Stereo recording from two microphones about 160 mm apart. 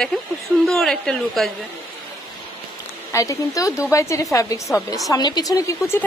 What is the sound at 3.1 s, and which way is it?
A woman's voice, 20° left (ahead or behind).